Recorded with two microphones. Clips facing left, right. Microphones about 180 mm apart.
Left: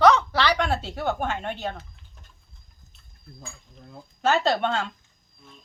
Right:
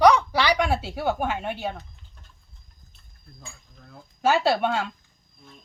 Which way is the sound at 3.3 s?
25° left (ahead or behind).